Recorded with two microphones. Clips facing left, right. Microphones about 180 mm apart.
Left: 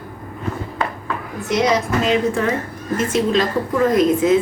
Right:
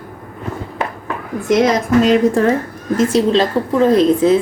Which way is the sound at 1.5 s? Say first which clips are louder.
Right 4 dB; 45° right (ahead or behind).